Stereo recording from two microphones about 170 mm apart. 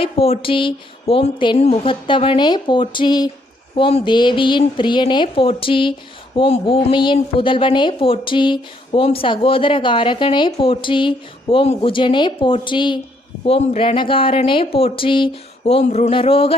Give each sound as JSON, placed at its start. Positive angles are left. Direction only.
{"t": 0.0, "sound": "a woman's voice", "side_deg": 35}